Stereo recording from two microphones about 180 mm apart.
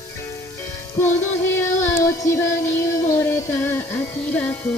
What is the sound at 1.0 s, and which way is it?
Female singing, 10° left (ahead or behind).